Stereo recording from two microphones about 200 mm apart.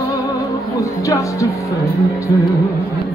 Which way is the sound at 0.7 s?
15° left (ahead or behind).